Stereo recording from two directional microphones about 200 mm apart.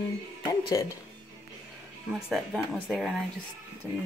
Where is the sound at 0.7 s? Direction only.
20° left (ahead or behind).